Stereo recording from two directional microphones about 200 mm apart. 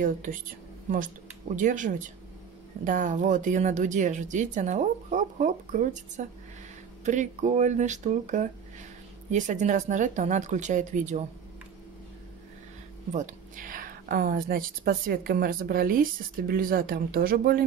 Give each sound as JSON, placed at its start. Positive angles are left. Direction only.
{"t": 0.0, "sound": "speech", "side_deg": -40}
{"t": 13.1, "sound": "a woman's voice", "side_deg": -40}